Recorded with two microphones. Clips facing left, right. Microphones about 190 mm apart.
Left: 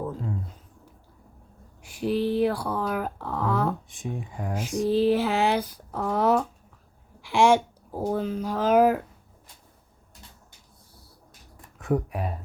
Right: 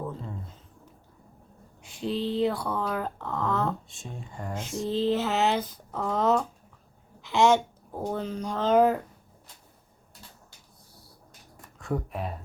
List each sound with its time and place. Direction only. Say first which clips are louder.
0.1 s a sound: left 5 dB; 5° left (ahead or behind)
1.8 s speech: left 4 dB; 25° right (ahead or behind)
2.4 s speech: left 2 dB; 10° left (ahead or behind)
4.3 s speech: even; 5° left (ahead or behind)